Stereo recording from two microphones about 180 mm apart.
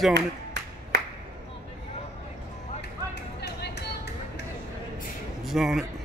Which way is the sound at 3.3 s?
65° left (ahead or behind).